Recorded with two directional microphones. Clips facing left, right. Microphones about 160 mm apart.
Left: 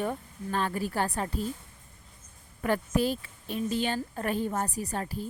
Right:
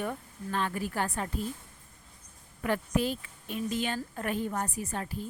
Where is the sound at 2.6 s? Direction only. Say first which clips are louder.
Left 2 dB; 40° left (ahead or behind).